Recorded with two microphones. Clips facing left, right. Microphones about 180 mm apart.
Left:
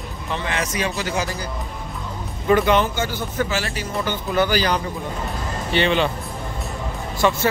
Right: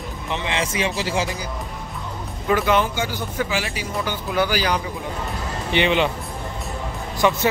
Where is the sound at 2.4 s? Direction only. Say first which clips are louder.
Left 2 dB; 5° right (ahead or behind).